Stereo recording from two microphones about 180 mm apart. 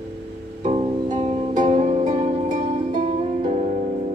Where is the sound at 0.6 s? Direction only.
40° right (ahead or behind).